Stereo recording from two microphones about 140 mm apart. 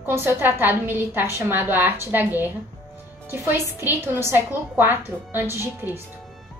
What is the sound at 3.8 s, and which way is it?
A woman's voice, 15° right (ahead or behind).